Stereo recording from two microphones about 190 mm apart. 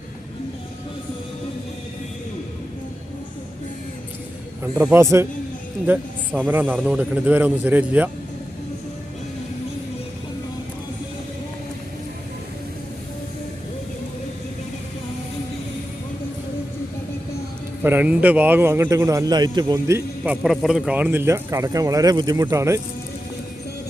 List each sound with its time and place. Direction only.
4.8 s speech: 15° right (ahead or behind)
17.8 s speech: 10° right (ahead or behind)
20.2 s speech: 5° right (ahead or behind)